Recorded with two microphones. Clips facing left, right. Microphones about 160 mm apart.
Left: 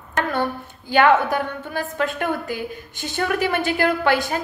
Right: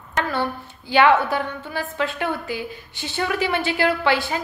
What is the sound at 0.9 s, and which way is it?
A woman's voice, 50° left (ahead or behind).